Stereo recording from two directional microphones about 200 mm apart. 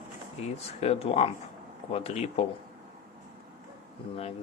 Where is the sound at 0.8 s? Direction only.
30° left (ahead or behind).